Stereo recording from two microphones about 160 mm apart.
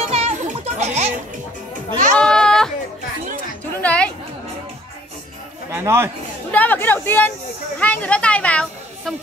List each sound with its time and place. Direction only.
0.0 s children playing: 40° right (ahead or behind)
2.1 s sheep: 5° left (ahead or behind)
3.8 s music: 10° left (ahead or behind)
5.7 s speech: 15° right (ahead or behind)
6.5 s speech: 10° left (ahead or behind)
7.8 s a sound: 10° left (ahead or behind)